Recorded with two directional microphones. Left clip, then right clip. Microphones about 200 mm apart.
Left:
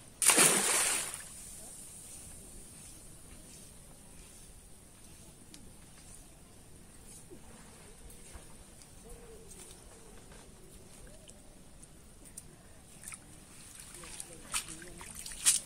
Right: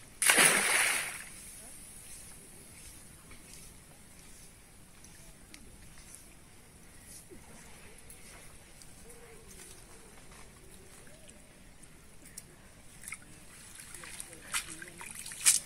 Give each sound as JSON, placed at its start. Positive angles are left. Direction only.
{"t": 0.2, "sound": "splash", "side_deg": 50}
{"t": 14.5, "sound": "trickle", "side_deg": 15}